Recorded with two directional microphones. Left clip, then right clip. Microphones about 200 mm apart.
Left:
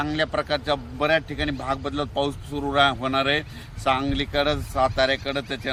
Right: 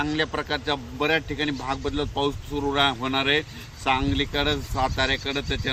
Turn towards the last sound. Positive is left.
turn(degrees=25)  # may be behind; listen again after turning